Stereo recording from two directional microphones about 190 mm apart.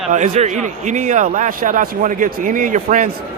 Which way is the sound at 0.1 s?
40° right (ahead or behind).